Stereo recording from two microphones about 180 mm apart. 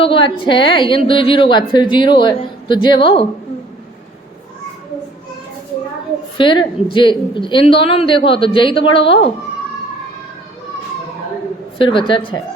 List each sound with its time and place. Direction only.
0.0 s speech: 30° left (ahead or behind)
6.3 s speech: 25° left (ahead or behind)
11.8 s speech: 30° left (ahead or behind)